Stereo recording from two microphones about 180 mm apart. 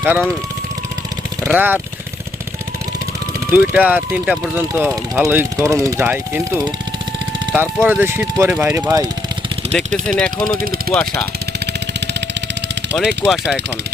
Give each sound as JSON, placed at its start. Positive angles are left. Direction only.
{"t": 0.0, "sound": "speech", "side_deg": -10}
{"t": 1.5, "sound": "speech", "side_deg": -10}
{"t": 3.5, "sound": "speech", "side_deg": -5}
{"t": 10.1, "sound": "speech", "side_deg": 5}
{"t": 11.6, "sound": "vehicle", "side_deg": -70}
{"t": 13.0, "sound": "speech", "side_deg": 0}